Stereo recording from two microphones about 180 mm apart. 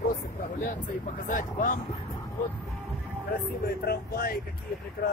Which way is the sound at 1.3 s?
50° left (ahead or behind).